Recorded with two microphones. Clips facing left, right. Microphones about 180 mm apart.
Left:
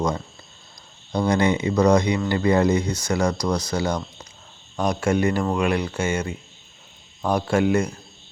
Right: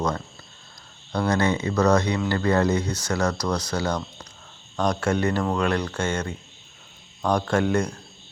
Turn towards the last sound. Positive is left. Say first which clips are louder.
# left 2 dB
turn(degrees=10)  # may be behind; listen again after turning